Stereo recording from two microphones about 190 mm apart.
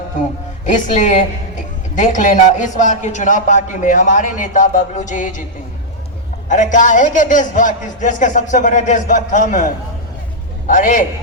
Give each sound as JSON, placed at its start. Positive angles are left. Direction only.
{"t": 0.7, "sound": "a man's voice", "side_deg": 40}
{"t": 6.5, "sound": "a man's voice", "side_deg": 40}